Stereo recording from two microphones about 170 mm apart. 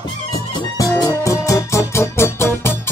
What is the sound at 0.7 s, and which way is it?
Music, 20° left (ahead or behind).